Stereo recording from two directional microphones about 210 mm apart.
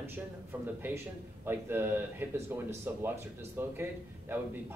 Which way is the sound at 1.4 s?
10° right (ahead or behind).